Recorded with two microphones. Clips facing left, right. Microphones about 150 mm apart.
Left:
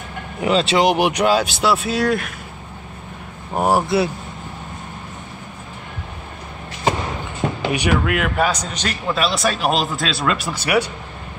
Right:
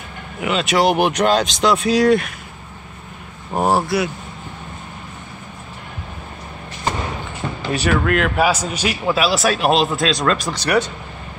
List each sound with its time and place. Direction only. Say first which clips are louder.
0.4 s speech: left 3 dB; 35° left (ahead or behind)
0.7 s speech: right 4 dB; 15° left (ahead or behind)
3.5 s speech: even; 10° left (ahead or behind)
3.8 s speech: left 2 dB; 25° left (ahead or behind)
7.7 s speech: right 4 dB; 15° left (ahead or behind)
8.4 s a man's voice: right 2 dB; 5° right (ahead or behind); by 10.9 s 10° left (ahead or behind)